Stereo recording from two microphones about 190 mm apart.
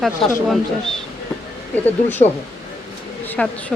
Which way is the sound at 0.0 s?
Centre (ahead or behind).